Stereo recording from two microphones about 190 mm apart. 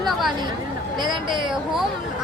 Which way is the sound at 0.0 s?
Centre (ahead or behind).